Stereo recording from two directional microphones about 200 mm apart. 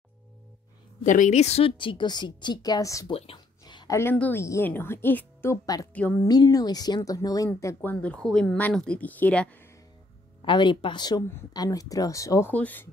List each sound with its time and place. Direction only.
1.0 s a woman's voice: 40° left (ahead or behind); by 3.1 s 15° left (ahead or behind)
3.1 s a woman's voice: 30° left (ahead or behind); by 6.2 s 10° left (ahead or behind)
6.2 s speech: 20° left (ahead or behind)
10.4 s speech: 25° left (ahead or behind)